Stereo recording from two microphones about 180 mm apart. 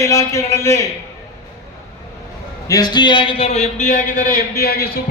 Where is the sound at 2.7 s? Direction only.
20° left (ahead or behind).